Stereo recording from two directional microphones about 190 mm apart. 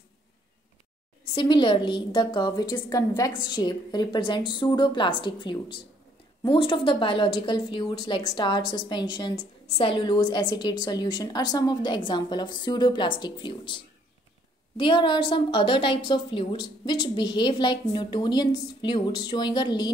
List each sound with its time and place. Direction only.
1.3 s a woman's voice: 25° left (ahead or behind)
14.8 s a woman's voice: 25° left (ahead or behind)